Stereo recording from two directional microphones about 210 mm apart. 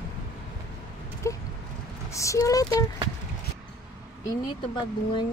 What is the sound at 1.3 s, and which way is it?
Speech, 15° left (ahead or behind).